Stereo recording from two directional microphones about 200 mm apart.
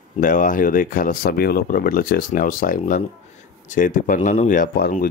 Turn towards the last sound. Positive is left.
turn(degrees=45)  # may be behind; listen again after turning